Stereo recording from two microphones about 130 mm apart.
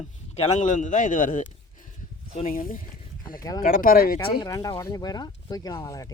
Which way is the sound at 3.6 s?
90° left.